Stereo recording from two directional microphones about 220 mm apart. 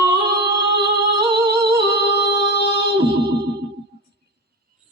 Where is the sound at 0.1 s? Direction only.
50° right (ahead or behind).